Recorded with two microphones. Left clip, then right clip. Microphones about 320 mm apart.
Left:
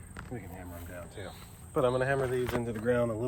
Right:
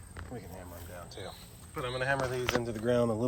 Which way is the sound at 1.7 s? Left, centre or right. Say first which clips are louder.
Left 4 dB; centre.